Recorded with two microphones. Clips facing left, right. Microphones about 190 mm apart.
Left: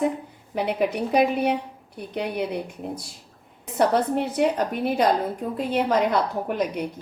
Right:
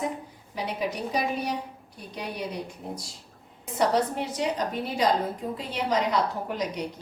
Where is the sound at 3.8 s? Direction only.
55° left (ahead or behind).